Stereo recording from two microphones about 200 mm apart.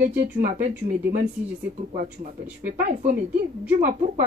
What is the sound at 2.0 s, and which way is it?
Speech, 40° right (ahead or behind).